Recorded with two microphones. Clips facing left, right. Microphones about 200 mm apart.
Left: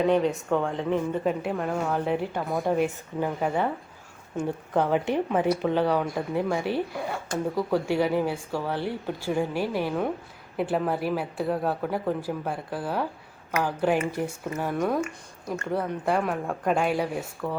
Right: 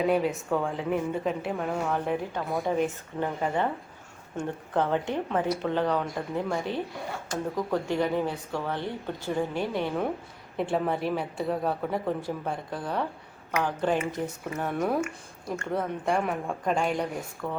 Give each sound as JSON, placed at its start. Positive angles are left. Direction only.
{"t": 0.0, "sound": "a woman's voice", "side_deg": -5}